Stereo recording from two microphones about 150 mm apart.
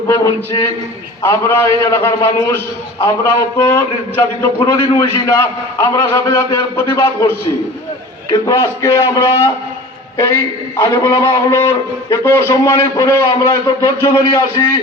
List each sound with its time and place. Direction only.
0.1 s a man's voice: 20° left (ahead or behind)
8.3 s a man's voice: 25° left (ahead or behind)